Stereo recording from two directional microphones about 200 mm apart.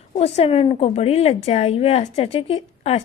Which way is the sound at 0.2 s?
30° left (ahead or behind).